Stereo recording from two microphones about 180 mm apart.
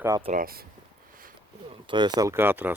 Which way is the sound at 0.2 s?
45° right (ahead or behind).